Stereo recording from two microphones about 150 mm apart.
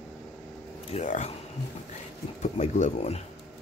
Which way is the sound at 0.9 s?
50° left (ahead or behind).